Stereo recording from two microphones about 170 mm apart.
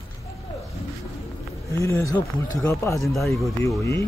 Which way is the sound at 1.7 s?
20° left (ahead or behind).